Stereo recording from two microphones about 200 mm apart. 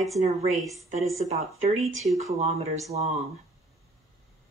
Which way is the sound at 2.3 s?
30° right (ahead or behind).